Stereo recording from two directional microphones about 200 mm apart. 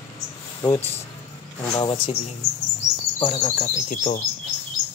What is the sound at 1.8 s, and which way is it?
Speech, 20° left (ahead or behind).